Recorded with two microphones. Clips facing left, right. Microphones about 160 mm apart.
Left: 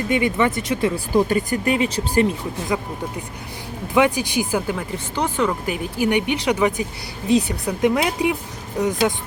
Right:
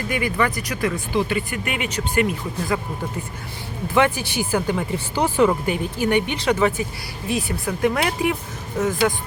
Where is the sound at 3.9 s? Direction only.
15° left (ahead or behind).